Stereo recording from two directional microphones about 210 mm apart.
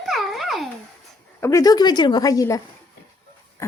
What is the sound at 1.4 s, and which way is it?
A woman's voice, 15° left (ahead or behind).